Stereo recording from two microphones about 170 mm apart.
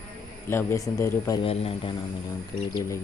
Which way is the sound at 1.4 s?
35° left (ahead or behind).